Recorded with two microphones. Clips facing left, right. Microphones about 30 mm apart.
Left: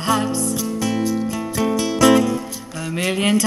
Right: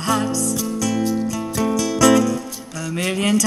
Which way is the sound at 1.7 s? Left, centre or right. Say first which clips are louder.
Even; left.